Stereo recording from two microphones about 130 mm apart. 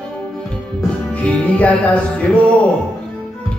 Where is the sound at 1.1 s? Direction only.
10° left (ahead or behind).